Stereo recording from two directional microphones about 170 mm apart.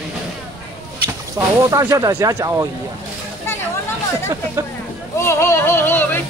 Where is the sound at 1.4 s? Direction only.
20° right (ahead or behind).